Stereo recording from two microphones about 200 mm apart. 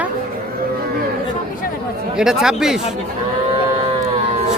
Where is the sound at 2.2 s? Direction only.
5° right (ahead or behind).